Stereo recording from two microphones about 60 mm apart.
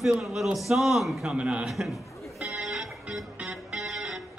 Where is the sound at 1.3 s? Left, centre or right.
Centre.